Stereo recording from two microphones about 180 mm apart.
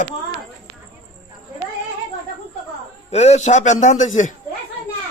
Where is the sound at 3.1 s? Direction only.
40° left (ahead or behind).